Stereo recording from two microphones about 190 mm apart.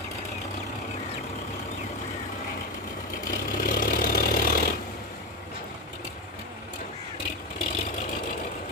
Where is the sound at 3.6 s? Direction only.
50° left (ahead or behind).